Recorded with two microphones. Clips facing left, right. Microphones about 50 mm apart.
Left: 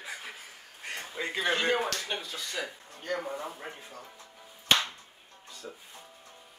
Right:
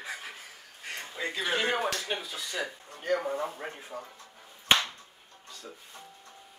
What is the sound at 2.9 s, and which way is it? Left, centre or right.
A man's voice, centre.